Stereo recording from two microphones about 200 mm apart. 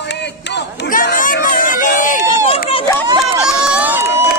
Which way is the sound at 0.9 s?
45° left (ahead or behind).